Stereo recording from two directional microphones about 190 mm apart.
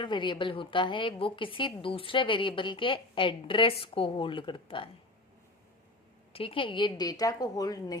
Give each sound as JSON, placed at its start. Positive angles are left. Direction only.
{"t": 0.0, "sound": "a woman's voice", "side_deg": 25}
{"t": 6.3, "sound": "a woman's voice", "side_deg": 30}